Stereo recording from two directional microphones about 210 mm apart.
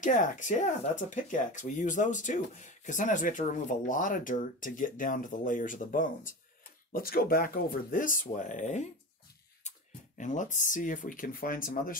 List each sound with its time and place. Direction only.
0.0 s speech: 35° left (ahead or behind)